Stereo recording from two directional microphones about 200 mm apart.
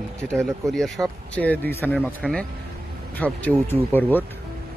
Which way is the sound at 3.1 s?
5° left (ahead or behind).